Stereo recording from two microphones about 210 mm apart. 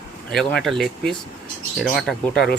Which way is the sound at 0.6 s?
Centre (ahead or behind).